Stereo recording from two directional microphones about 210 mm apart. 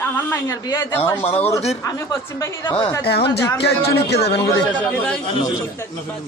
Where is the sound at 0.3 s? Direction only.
10° left (ahead or behind).